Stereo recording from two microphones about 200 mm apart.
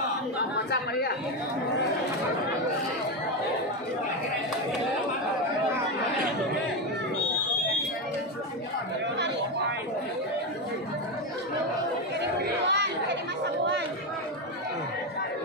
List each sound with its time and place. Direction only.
12.2 s chatter: 60° right (ahead or behind)